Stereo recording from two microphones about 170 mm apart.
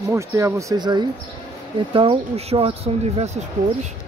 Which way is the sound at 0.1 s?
15° right (ahead or behind).